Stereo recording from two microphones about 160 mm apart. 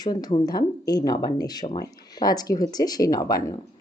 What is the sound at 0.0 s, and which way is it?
Speech, 25° left (ahead or behind).